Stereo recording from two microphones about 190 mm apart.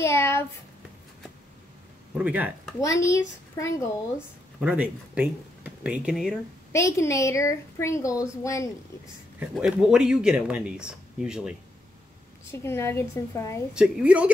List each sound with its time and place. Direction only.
0.0 s speech: 15° left (ahead or behind)
2.1 s speech: 5° right (ahead or behind)
2.8 s a woman's voice: 15° left (ahead or behind)
4.6 s speech: 5° right (ahead or behind)
6.7 s a woman's voice: 15° left (ahead or behind)
9.0 s speech: 5° right (ahead or behind)
12.4 s a woman's voice: 15° left (ahead or behind)
13.7 s speech: 5° right (ahead or behind)